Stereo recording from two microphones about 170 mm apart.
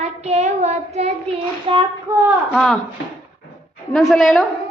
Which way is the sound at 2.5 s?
5° left (ahead or behind).